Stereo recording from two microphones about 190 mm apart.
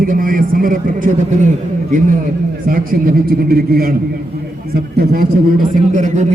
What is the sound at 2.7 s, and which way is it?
A man's voice, 50° right (ahead or behind).